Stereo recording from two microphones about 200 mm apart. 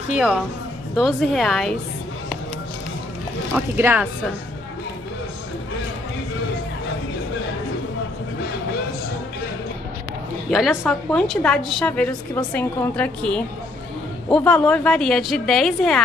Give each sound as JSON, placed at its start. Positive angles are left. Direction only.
{"t": 0.1, "sound": "a woman's voice", "side_deg": -5}
{"t": 3.5, "sound": "speech", "side_deg": -10}
{"t": 10.8, "sound": "a woman's voice", "side_deg": 0}